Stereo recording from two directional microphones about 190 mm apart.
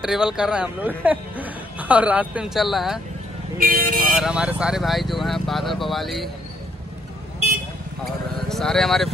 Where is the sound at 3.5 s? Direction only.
50° right (ahead or behind).